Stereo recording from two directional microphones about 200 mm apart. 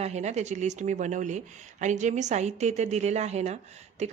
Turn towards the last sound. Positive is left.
turn(degrees=-35)  # may be behind; listen again after turning